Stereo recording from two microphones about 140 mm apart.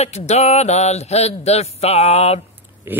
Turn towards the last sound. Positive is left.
turn(degrees=-15)  # may be behind; listen again after turning